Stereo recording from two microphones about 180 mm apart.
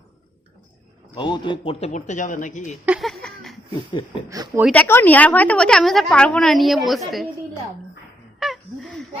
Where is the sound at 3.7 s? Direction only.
25° left (ahead or behind).